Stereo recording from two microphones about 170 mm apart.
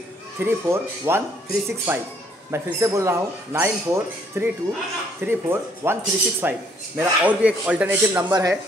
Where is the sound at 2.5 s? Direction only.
15° right (ahead or behind).